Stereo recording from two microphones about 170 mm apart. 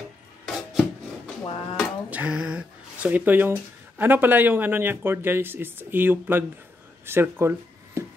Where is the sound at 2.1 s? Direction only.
5° right (ahead or behind).